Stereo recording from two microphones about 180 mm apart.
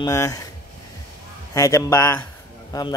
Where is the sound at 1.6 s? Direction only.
15° left (ahead or behind).